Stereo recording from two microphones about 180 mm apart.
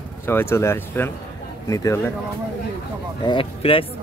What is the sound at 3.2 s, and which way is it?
Speech, 30° left (ahead or behind).